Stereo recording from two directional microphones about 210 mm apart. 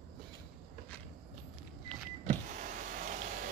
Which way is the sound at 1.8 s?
5° left (ahead or behind).